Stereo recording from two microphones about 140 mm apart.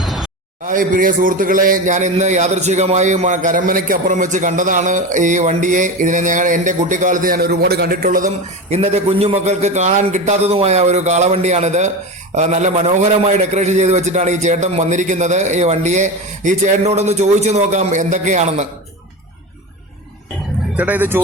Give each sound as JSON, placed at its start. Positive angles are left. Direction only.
{"t": 0.0, "sound": "a sound", "side_deg": 0}
{"t": 0.6, "sound": "a man's voice", "side_deg": -70}
{"t": 8.7, "sound": "a man's voice", "side_deg": -50}
{"t": 20.7, "sound": "speech", "side_deg": -10}